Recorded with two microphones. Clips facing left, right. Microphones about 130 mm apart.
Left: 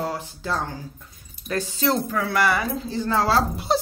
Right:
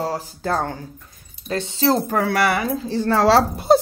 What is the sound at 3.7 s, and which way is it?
Speech, 50° right (ahead or behind).